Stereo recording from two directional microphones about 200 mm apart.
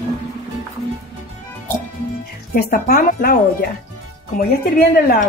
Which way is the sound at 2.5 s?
45° left (ahead or behind).